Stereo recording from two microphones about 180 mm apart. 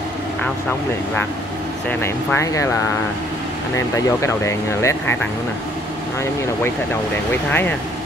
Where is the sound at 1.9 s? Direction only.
15° left (ahead or behind).